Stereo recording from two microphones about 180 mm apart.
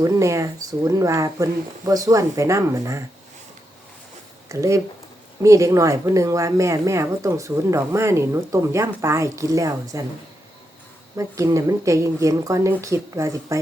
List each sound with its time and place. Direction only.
0.0 s speech: 15° right (ahead or behind)
4.4 s speech: 15° right (ahead or behind)
11.2 s speech: 15° right (ahead or behind)